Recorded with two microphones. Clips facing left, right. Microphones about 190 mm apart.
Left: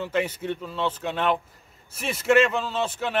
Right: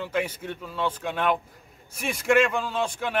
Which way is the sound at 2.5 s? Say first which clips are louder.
Even; 10° right (ahead or behind).